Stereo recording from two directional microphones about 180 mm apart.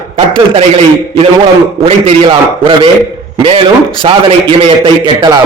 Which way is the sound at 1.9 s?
35° right (ahead or behind).